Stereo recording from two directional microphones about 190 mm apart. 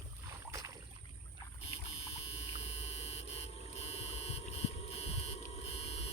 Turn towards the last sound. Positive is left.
turn(degrees=35)  # may be behind; listen again after turning